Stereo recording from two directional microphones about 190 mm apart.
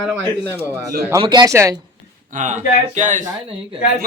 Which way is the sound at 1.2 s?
20° right (ahead or behind).